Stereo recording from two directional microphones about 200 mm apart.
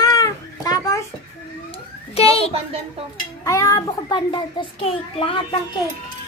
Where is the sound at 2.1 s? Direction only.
30° left (ahead or behind).